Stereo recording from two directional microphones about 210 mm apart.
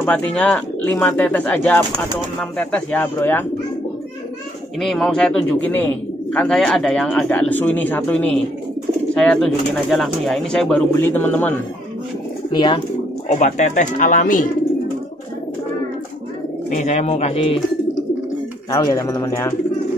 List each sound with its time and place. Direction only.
0.0 s speech: 5° left (ahead or behind)
4.7 s speech: centre (ahead or behind)
12.5 s speech: 25° left (ahead or behind)
13.4 s speech: 35° left (ahead or behind)
16.7 s speech: 35° left (ahead or behind)
18.7 s speech: 20° left (ahead or behind)